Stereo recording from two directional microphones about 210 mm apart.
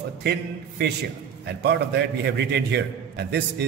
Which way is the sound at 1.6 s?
55° right (ahead or behind).